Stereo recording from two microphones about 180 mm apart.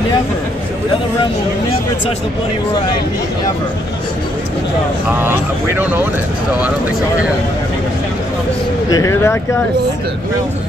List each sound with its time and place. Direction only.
5.8 s speech: 10° right (ahead or behind)
8.9 s speech: 15° left (ahead or behind)